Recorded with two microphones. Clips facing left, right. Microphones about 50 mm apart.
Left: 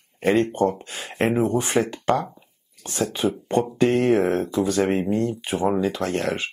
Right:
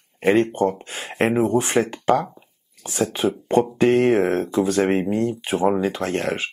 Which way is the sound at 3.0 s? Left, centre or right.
Right.